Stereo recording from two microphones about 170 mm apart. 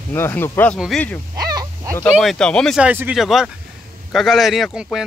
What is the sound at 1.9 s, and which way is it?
Speech, 5° left (ahead or behind).